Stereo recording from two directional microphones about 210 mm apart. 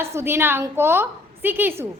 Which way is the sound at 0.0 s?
10° right (ahead or behind).